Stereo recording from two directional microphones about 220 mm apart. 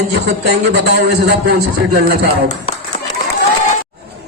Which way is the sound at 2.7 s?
25° left (ahead or behind).